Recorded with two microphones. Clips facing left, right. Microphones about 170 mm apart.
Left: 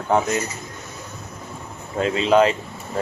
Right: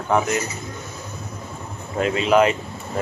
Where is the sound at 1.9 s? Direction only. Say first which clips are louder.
Even; 30° left (ahead or behind).